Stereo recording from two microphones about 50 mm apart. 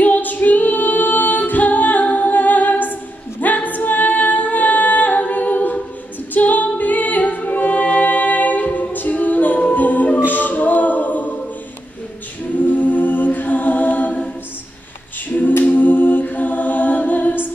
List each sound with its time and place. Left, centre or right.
0.0 s a capella: left
6.3 s music: left
12.6 s a capella: left
15.3 s a capella: left
15.6 s music: left